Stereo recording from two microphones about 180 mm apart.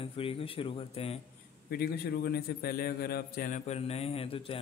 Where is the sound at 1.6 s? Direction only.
60° left (ahead or behind).